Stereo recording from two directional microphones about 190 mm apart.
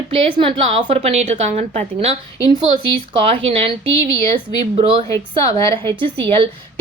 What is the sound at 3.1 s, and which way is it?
A woman's voice, 30° right (ahead or behind).